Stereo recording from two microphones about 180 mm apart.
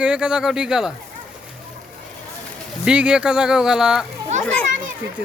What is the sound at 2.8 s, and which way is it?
Speech, 5° right (ahead or behind).